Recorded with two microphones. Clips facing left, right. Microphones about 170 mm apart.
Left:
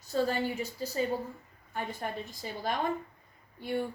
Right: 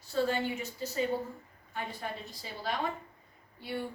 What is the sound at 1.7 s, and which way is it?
Speech, 45° left (ahead or behind).